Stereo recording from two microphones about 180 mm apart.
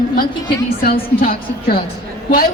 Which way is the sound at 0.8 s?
55° left (ahead or behind).